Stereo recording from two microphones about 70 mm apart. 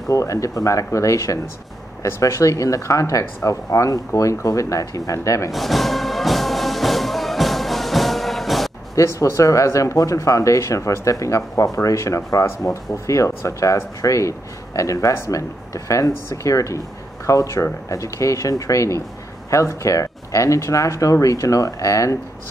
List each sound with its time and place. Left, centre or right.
0.1 s speech: left
5.5 s music: centre
8.9 s speech: left